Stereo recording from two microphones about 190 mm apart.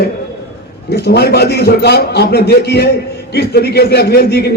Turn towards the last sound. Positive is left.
turn(degrees=55)  # may be behind; listen again after turning